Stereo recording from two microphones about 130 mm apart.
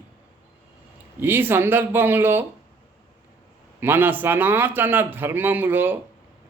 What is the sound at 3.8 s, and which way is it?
A man's voice, 15° right (ahead or behind).